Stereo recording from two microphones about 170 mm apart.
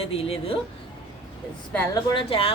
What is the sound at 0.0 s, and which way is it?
Speech, 35° left (ahead or behind).